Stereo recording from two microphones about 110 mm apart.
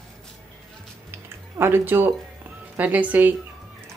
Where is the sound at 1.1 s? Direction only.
20° right (ahead or behind).